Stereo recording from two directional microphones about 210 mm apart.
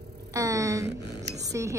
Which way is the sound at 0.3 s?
15° right (ahead or behind).